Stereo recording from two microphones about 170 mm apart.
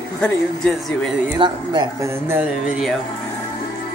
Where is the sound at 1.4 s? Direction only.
25° right (ahead or behind); by 3.0 s 5° right (ahead or behind).